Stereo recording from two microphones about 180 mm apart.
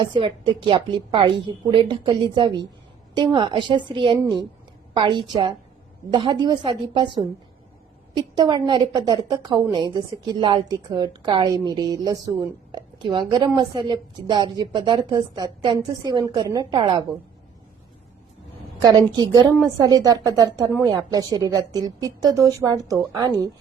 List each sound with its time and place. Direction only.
0.0 s a woman's voice: 25° right (ahead or behind)
18.8 s a woman's voice: 20° right (ahead or behind)